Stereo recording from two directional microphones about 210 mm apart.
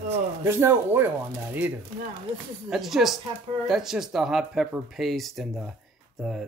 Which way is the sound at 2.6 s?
Centre (ahead or behind).